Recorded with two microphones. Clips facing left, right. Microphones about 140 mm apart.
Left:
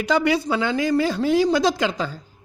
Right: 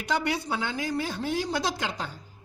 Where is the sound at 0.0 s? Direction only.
90° left.